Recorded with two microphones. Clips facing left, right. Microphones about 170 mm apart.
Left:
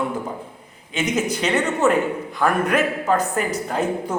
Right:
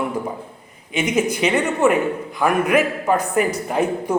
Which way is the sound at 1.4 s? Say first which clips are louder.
Right 1 dB; 10° right (ahead or behind).